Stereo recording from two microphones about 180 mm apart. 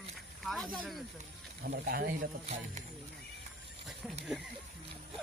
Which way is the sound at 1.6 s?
60° right (ahead or behind).